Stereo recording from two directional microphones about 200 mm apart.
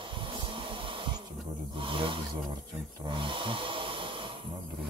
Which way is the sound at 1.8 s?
25° right (ahead or behind).